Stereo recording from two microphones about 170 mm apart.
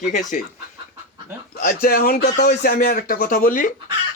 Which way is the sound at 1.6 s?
60° left (ahead or behind).